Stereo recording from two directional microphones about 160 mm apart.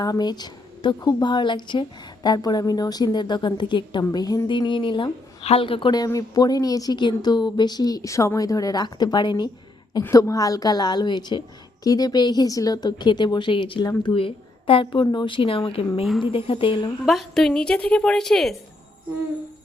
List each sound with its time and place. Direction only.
0.0 s a woman's voice: 25° left (ahead or behind)
17.1 s a woman's voice: centre (ahead or behind)